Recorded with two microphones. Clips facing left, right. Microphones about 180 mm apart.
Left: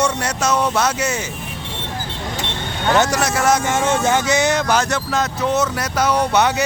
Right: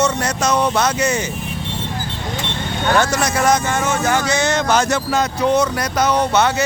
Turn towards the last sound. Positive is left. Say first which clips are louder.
# right 1 dB
turn(degrees=15)  # may be behind; listen again after turning